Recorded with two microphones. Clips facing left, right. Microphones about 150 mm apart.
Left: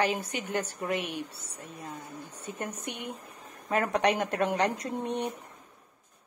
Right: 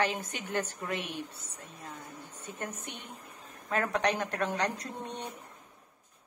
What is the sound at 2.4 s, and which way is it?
A woman's voice, 10° left (ahead or behind).